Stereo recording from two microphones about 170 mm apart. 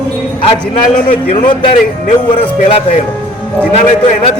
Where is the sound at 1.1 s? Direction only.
35° left (ahead or behind).